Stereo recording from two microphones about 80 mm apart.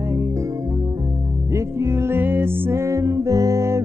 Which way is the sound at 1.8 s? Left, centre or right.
Right.